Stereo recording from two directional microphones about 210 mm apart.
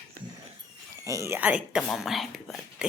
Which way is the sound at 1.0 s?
15° right (ahead or behind).